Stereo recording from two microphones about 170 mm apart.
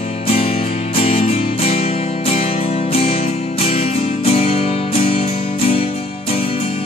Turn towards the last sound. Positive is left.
turn(degrees=35)  # may be behind; listen again after turning